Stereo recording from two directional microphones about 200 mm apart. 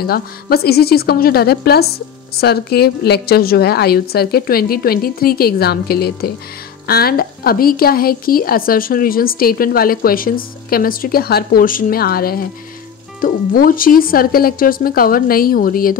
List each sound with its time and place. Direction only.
0.0 s a woman's voice: 50° left (ahead or behind)